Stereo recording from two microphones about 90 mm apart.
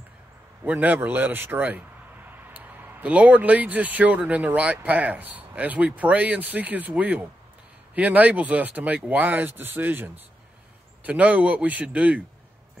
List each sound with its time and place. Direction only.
0.7 s a man's voice: 15° right (ahead or behind)